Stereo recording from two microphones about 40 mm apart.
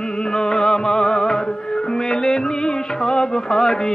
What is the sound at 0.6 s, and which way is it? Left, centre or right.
Music, centre.